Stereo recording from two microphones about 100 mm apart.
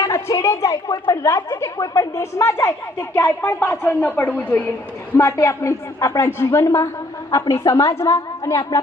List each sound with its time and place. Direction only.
0.0 s a sound: 30° left (ahead or behind)
1.0 s a woman's voice: 35° left (ahead or behind); by 4.6 s 20° left (ahead or behind)
5.1 s a woman's voice: 30° left (ahead or behind)